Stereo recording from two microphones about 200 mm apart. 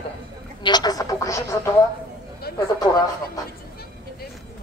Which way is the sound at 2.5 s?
50° left (ahead or behind).